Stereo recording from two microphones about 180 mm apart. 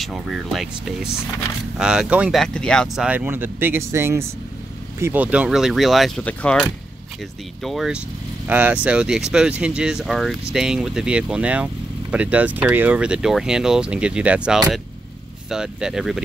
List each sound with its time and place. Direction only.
0.0 s speech: centre (ahead or behind)
2.4 s speech: 5° left (ahead or behind)
3.1 s speech: 10° right (ahead or behind)